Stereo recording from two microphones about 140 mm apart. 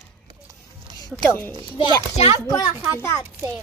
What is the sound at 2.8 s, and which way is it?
Speech, 20° left (ahead or behind).